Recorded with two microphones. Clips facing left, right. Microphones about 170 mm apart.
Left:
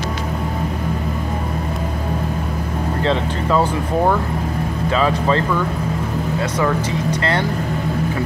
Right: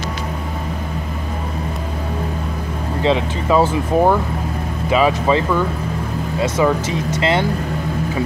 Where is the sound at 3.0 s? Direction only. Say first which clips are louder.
Right 3 dB; 15° right (ahead or behind).